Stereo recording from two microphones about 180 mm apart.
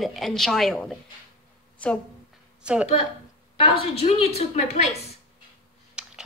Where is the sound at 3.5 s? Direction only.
30° left (ahead or behind).